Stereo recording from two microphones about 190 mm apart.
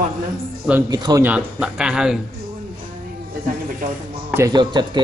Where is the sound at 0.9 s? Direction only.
20° right (ahead or behind).